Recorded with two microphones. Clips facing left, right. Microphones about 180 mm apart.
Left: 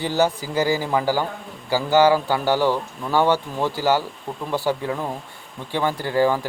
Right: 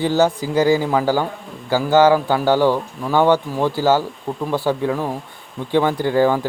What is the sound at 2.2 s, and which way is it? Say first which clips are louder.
Speech: right 4 dB; 15° right (ahead or behind).